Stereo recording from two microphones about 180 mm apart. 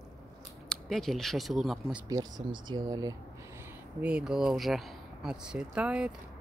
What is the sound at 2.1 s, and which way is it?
Speech, 20° right (ahead or behind).